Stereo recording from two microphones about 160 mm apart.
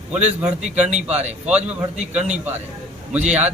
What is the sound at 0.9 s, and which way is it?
Speech, 45° right (ahead or behind).